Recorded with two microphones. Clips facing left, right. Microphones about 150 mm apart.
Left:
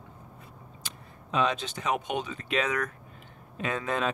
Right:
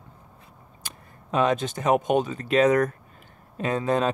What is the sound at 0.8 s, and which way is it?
Speech, 45° right (ahead or behind).